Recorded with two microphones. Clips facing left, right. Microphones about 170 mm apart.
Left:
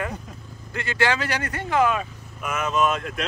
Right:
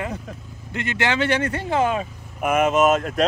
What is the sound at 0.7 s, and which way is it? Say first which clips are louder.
Speech: right 1 dB; 20° right (ahead or behind).